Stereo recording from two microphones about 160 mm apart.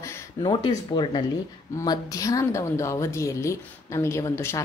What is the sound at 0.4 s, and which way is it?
Speech, 30° left (ahead or behind).